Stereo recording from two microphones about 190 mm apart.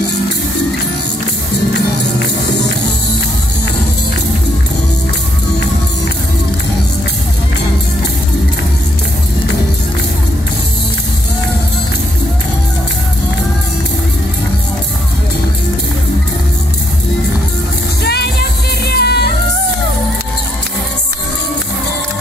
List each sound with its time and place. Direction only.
18.0 s music: 60° left (ahead or behind)